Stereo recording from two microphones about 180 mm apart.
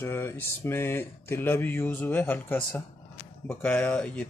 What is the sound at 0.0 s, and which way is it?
Speech, 15° left (ahead or behind).